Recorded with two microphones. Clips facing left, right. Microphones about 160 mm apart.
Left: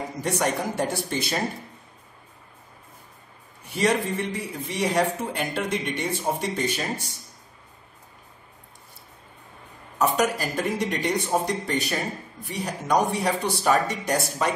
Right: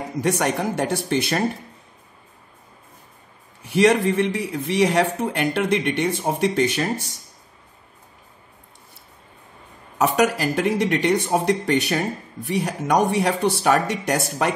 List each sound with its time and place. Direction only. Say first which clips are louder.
0.2 s a man's voice: right 4 dB; 70° right (ahead or behind)
3.7 s a man's voice: right 7 dB; 75° right (ahead or behind)
9.9 s a man's voice: right 4 dB; 70° right (ahead or behind)